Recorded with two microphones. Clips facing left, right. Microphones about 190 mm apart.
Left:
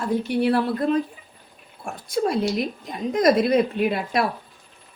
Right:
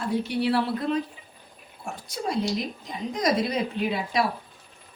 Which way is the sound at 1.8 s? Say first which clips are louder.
Left 7 dB; 60° left (ahead or behind).